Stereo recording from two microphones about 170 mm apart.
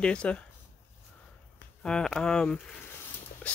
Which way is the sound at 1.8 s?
5° left (ahead or behind).